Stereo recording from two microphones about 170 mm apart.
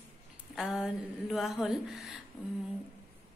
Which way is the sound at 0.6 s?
Centre (ahead or behind).